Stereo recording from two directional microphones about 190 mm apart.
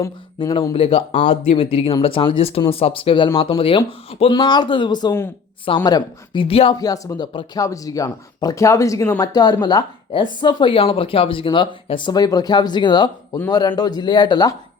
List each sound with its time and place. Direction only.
0.3 s speech: 25° left (ahead or behind)
6.7 s speech: 20° left (ahead or behind)